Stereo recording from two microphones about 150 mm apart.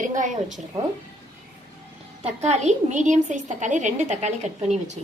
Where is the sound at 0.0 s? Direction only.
60° right (ahead or behind).